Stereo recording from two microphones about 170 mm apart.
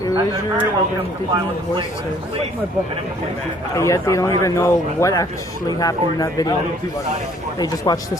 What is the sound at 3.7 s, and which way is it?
Speech, 20° left (ahead or behind).